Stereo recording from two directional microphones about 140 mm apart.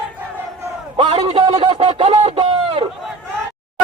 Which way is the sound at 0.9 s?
40° right (ahead or behind).